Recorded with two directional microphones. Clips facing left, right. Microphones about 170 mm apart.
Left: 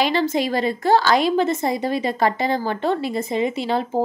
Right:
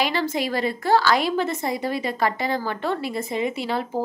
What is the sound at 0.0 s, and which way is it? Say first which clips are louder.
Speech: left 4 dB; 20° left (ahead or behind).